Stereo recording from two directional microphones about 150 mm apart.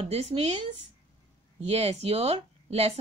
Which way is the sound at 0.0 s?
45° right (ahead or behind).